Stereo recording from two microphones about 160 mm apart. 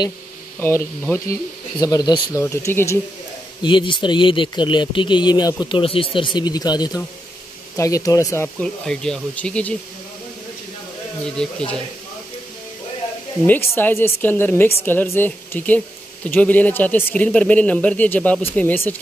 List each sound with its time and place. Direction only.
0.6 s speech: 15° left (ahead or behind)
2.4 s speech: 15° left (ahead or behind)
3.6 s speech: 30° left (ahead or behind)
8.5 s speech: 5° left (ahead or behind)
11.4 s speech: 5° left (ahead or behind)
13.5 s speech: 10° left (ahead or behind)